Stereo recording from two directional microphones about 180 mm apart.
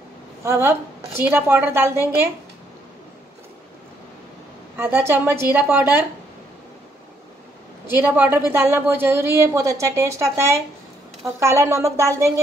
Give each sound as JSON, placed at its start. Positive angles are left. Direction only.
{"t": 0.4, "sound": "a woman's voice", "side_deg": -15}
{"t": 4.7, "sound": "a woman's voice", "side_deg": -10}
{"t": 7.8, "sound": "a woman's voice", "side_deg": -10}